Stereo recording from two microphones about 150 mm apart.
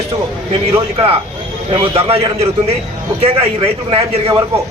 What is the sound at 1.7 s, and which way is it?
Speech, 40° right (ahead or behind).